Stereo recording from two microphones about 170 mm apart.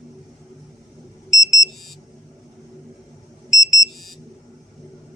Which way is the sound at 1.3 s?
20° left (ahead or behind).